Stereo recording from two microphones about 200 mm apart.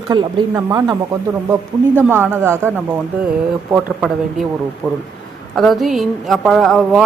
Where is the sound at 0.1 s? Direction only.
15° right (ahead or behind).